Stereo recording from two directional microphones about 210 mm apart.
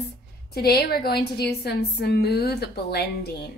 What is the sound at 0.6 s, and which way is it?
Speech, 50° left (ahead or behind).